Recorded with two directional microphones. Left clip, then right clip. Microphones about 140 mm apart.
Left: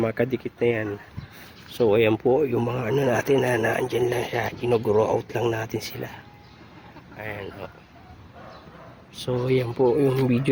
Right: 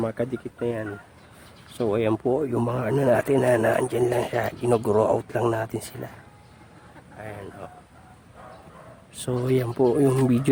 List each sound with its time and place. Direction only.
0.0 s speech: centre (ahead or behind)
1.8 s speech: 10° right (ahead or behind)
7.2 s speech: 5° right (ahead or behind)
9.2 s speech: 30° right (ahead or behind)